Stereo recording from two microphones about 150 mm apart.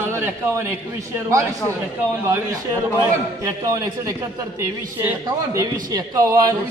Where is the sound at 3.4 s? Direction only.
25° right (ahead or behind).